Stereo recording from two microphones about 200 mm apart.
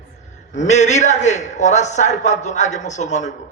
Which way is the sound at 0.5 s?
35° left (ahead or behind).